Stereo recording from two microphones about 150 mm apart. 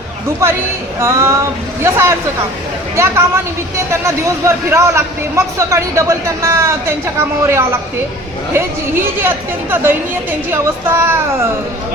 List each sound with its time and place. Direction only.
0.9 s speech: 20° right (ahead or behind)